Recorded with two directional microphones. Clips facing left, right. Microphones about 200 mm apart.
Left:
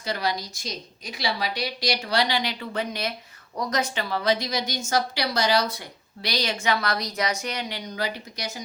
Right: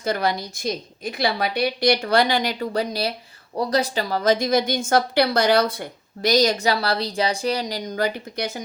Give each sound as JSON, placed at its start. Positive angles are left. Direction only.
{"t": 0.0, "sound": "a woman's voice", "side_deg": -50}